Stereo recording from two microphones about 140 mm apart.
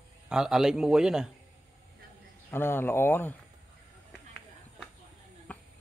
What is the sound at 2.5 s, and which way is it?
Speech, 15° left (ahead or behind).